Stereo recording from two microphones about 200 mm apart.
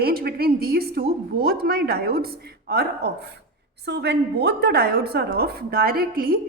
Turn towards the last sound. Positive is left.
turn(degrees=-50)  # may be behind; listen again after turning